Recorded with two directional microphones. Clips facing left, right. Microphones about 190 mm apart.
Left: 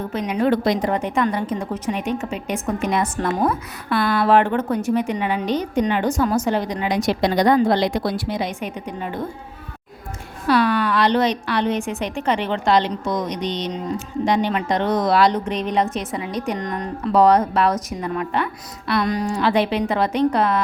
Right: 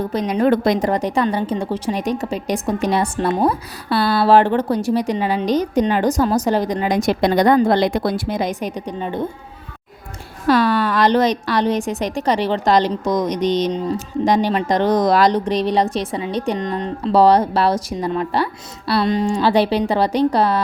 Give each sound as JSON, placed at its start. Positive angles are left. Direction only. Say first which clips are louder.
{"t": 0.0, "sound": "a woman's voice", "louder": "right 3 dB", "side_deg": -35}
{"t": 10.4, "sound": "a woman's voice", "louder": "right 2 dB", "side_deg": -40}